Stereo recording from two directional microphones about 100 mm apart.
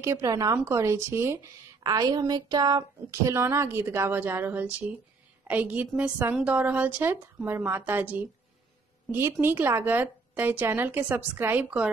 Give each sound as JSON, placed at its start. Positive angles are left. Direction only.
{"t": 0.0, "sound": "a woman's voice", "side_deg": -30}
{"t": 0.7, "sound": "speech", "side_deg": -30}
{"t": 1.8, "sound": "a woman's voice", "side_deg": -40}